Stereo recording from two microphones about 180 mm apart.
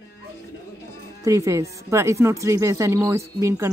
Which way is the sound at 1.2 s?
15° right (ahead or behind).